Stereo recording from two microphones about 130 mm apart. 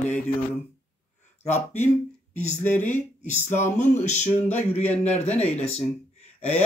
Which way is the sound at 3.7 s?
65° left (ahead or behind).